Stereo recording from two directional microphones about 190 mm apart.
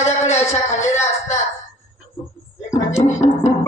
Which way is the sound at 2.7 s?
40° left (ahead or behind).